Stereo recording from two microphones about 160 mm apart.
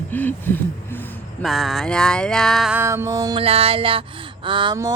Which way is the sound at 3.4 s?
35° right (ahead or behind).